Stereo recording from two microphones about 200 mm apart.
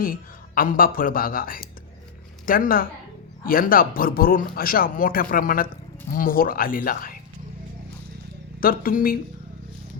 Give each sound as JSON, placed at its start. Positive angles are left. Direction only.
{"t": 0.0, "sound": "speech", "side_deg": 45}
{"t": 8.6, "sound": "speech", "side_deg": 45}